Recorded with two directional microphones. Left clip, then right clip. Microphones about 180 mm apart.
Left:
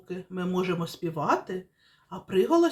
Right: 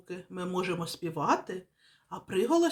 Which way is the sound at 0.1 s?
25° right (ahead or behind).